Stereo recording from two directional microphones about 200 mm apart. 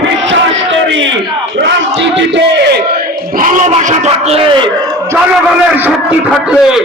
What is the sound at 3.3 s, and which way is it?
Speech, 40° right (ahead or behind).